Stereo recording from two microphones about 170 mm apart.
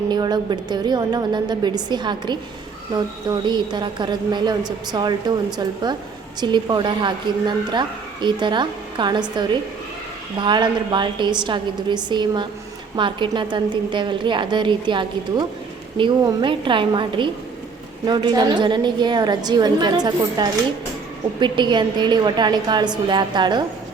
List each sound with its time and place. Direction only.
0.1 s a woman's voice: 25° right (ahead or behind)